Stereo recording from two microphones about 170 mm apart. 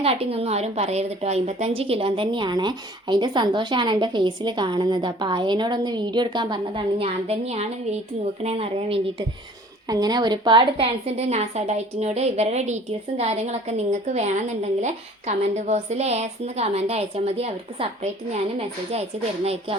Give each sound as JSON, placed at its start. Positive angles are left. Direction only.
{"t": 0.0, "sound": "a woman's voice", "side_deg": -35}
{"t": 9.9, "sound": "a woman's voice", "side_deg": -25}